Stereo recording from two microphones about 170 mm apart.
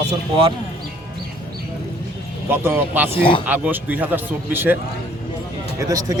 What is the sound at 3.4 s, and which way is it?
Speech, 10° right (ahead or behind).